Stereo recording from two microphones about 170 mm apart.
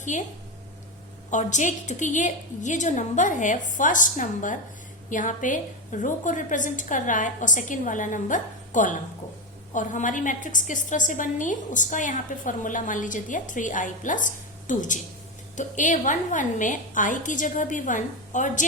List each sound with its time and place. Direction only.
0.0 s a woman's voice: 45° left (ahead or behind)
1.3 s a woman's voice: 45° left (ahead or behind)